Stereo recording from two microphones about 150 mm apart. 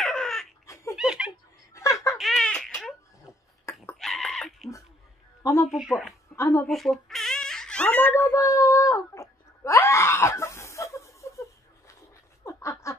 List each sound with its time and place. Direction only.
0.0 s a sound: centre (ahead or behind)
0.9 s laughter: 5° right (ahead or behind)
1.7 s a sound: 20° left (ahead or behind)
2.1 s giggle: centre (ahead or behind)
4.0 s goat: centre (ahead or behind)
5.4 s speech: 20° left (ahead or behind)
5.7 s speech: centre (ahead or behind)
6.3 s speech: 20° left (ahead or behind)
6.6 s baby cry: centre (ahead or behind); by 11.4 s 20° left (ahead or behind)
12.4 s a sound: 20° left (ahead or behind)